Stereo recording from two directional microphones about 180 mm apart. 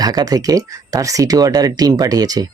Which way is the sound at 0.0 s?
20° right (ahead or behind).